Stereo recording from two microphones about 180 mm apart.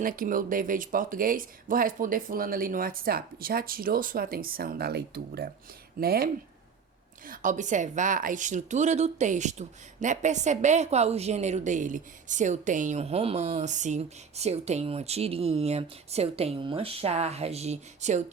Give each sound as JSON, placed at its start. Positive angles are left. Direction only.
{"t": 0.0, "sound": "speech", "side_deg": -50}
{"t": 7.3, "sound": "a woman's voice", "side_deg": -45}